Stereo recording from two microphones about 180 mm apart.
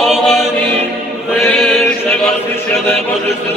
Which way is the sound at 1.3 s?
5° left (ahead or behind).